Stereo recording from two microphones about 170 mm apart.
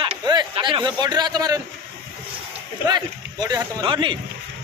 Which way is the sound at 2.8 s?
25° right (ahead or behind).